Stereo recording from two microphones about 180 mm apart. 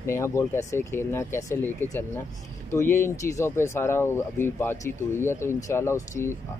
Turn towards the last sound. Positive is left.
turn(degrees=15)  # may be behind; listen again after turning